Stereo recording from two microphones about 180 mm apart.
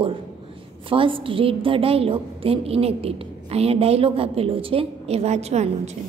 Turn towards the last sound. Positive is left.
turn(degrees=-40)  # may be behind; listen again after turning